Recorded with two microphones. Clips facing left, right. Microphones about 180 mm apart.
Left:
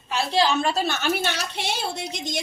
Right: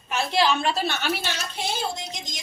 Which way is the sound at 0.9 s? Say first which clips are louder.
Left 3 dB; 45° left (ahead or behind).